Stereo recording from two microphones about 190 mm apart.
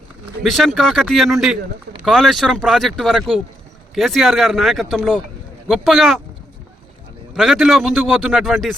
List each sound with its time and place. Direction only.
0.4 s speech: centre (ahead or behind)
7.3 s speech: centre (ahead or behind)